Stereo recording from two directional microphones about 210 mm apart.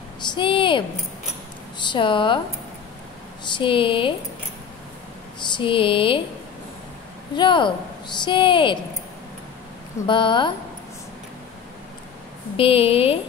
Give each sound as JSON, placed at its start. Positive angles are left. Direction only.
{"t": 0.3, "sound": "speech", "side_deg": 25}
{"t": 3.5, "sound": "speech", "side_deg": 25}
{"t": 5.5, "sound": "speech", "side_deg": 25}
{"t": 7.3, "sound": "speech", "side_deg": 20}
{"t": 10.0, "sound": "speech", "side_deg": 25}
{"t": 12.5, "sound": "speech", "side_deg": 25}